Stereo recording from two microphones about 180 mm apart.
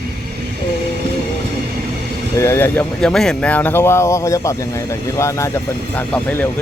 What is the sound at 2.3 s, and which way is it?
Speech, 15° left (ahead or behind).